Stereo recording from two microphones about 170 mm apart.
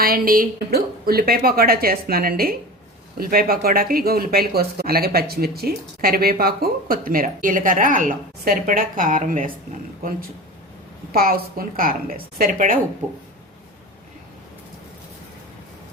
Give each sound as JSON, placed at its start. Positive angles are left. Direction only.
{"t": 0.0, "sound": "speech", "side_deg": -60}